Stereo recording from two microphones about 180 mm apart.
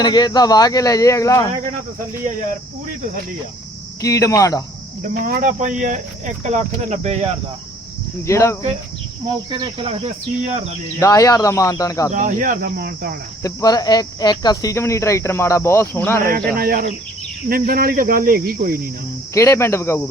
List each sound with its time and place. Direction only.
0.0 s speech: 25° left (ahead or behind)
4.0 s speech: 15° left (ahead or behind)
5.0 s speech: 50° right (ahead or behind)
8.3 s speech: 15° left (ahead or behind)
9.2 s speech: 25° right (ahead or behind)
11.0 s speech: 20° left (ahead or behind)
12.1 s speech: 45° right (ahead or behind)
13.4 s speech: 20° left (ahead or behind)
16.5 s speech: 55° right (ahead or behind)
19.3 s speech: 15° left (ahead or behind)